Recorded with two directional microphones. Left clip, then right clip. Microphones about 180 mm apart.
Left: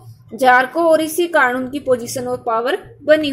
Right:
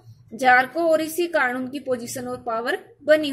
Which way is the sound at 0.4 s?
5° right (ahead or behind).